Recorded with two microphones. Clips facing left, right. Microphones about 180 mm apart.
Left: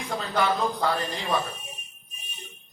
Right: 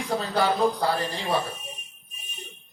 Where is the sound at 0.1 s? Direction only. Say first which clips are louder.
Right 1 dB; 35° right (ahead or behind).